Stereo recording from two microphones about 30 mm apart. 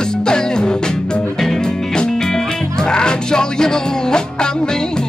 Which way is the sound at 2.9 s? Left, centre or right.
Left.